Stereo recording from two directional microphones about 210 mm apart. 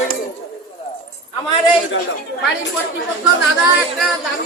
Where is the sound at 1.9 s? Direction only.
65° left (ahead or behind).